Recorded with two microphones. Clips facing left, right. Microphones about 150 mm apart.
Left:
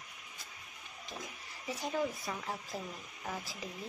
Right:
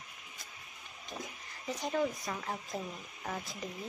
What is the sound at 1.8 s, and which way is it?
Speech, 5° left (ahead or behind).